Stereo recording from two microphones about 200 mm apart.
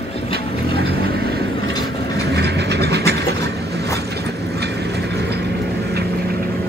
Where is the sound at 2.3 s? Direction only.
55° right (ahead or behind).